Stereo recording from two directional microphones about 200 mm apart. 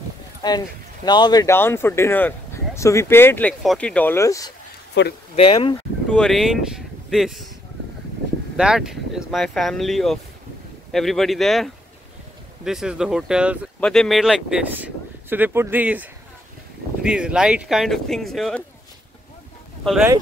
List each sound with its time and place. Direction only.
0.4 s speech: 20° left (ahead or behind)
5.0 s speech: 60° left (ahead or behind)
5.3 s speech: 30° left (ahead or behind)
6.0 s speech: 5° left (ahead or behind)
8.5 s speech: 5° right (ahead or behind)
19.8 s speech: centre (ahead or behind)